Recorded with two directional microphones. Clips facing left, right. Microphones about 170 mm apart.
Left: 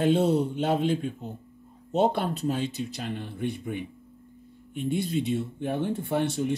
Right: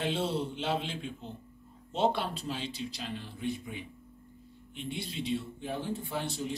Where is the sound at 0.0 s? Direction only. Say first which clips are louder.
Left 9 dB; 45° left (ahead or behind).